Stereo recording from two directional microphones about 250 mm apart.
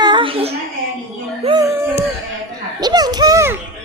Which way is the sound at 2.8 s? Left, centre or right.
Centre.